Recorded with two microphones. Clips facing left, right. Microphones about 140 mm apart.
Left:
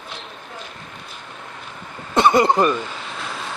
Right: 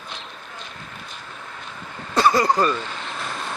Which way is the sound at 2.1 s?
25° left (ahead or behind).